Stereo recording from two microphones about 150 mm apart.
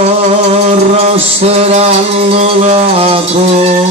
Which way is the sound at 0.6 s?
45° right (ahead or behind).